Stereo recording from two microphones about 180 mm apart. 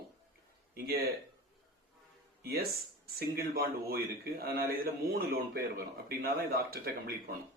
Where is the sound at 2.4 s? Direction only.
60° right (ahead or behind).